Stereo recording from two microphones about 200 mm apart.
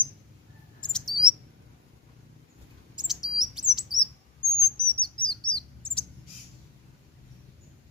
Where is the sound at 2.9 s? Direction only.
Centre (ahead or behind).